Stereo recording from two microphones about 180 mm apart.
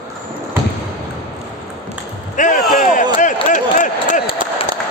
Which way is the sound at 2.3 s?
45° left (ahead or behind).